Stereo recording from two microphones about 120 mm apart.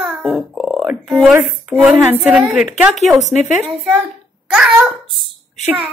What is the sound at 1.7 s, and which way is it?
Speech, 20° right (ahead or behind).